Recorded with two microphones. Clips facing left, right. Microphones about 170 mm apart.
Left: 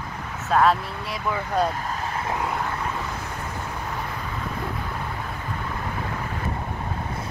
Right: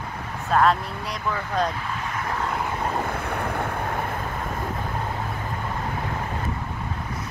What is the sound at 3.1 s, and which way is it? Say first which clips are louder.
Vehicle: right 5 dB; 60° right (ahead or behind).